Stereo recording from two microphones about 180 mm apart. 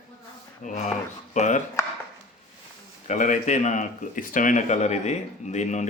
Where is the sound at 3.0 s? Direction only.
45° left (ahead or behind).